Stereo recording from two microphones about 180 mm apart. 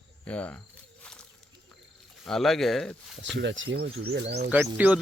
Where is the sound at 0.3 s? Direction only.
5° left (ahead or behind).